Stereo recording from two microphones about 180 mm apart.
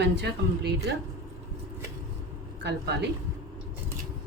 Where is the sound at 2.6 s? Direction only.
65° right (ahead or behind).